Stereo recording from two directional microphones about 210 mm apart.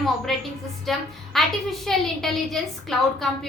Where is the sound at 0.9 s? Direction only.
Centre (ahead or behind).